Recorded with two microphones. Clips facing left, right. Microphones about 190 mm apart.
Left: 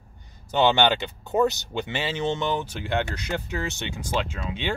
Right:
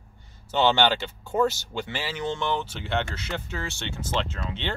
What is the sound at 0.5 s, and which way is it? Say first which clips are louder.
Speech: left 1 dB; 15° left (ahead or behind).